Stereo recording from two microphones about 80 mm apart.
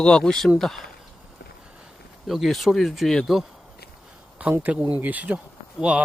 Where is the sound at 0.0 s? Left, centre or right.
Centre.